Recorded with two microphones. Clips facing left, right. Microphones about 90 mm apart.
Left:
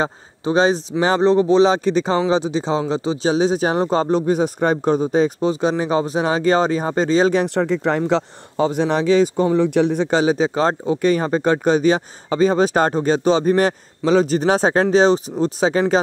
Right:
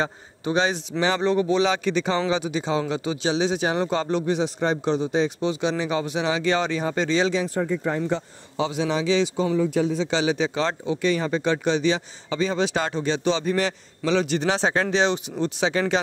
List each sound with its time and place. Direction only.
0.0 s speech: 35° left (ahead or behind)
7.3 s speech: 75° left (ahead or behind)
8.5 s speech: 45° left (ahead or behind)
9.6 s speech: 65° left (ahead or behind); by 15.8 s 35° left (ahead or behind)